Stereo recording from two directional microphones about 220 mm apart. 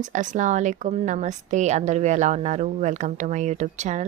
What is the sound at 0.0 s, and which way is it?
A woman's voice, 35° right (ahead or behind).